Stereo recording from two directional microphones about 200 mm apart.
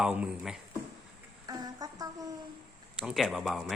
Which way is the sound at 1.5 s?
20° right (ahead or behind).